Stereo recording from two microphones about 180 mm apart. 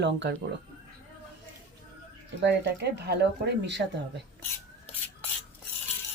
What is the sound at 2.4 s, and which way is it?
Speech, 70° right (ahead or behind).